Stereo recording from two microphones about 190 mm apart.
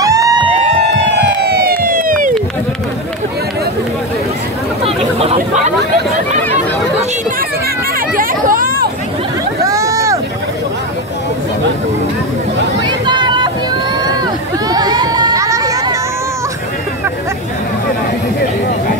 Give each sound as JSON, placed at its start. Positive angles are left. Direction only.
{"t": 0.0, "sound": "music", "side_deg": -20}
{"t": 1.2, "sound": "emergency vehicle", "side_deg": -55}
{"t": 4.8, "sound": "chatter", "side_deg": -30}
{"t": 8.2, "sound": "a sound", "side_deg": -50}
{"t": 9.7, "sound": "vehicle", "side_deg": -15}
{"t": 12.8, "sound": "vehicle", "side_deg": -25}
{"t": 14.7, "sound": "a sound", "side_deg": -20}